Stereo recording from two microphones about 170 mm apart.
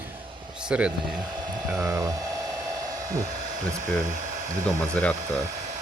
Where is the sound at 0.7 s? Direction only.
5° right (ahead or behind).